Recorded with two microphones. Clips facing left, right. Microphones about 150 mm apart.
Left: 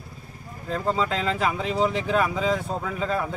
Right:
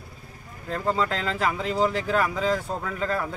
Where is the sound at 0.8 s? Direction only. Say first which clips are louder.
Left 1 dB; 10° left (ahead or behind).